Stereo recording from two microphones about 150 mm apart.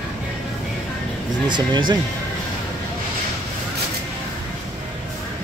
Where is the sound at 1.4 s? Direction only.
30° right (ahead or behind).